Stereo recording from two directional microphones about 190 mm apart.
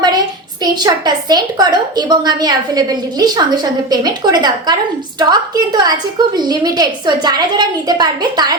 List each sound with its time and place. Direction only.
0.6 s a woman's voice: 20° right (ahead or behind)